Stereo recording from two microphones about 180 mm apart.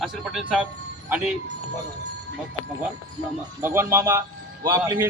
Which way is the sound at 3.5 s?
15° right (ahead or behind).